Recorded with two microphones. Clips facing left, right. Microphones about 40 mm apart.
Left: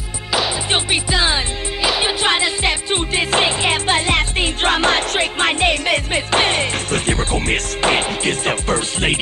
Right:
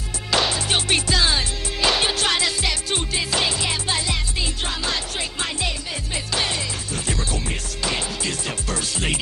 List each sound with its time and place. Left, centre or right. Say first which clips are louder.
0.8 s music: left 1 dB; centre
2.2 s music: left 5 dB; left